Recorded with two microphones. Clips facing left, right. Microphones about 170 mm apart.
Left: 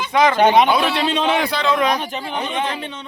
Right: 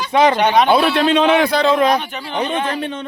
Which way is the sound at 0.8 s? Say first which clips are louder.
Right 4 dB; 40° right (ahead or behind).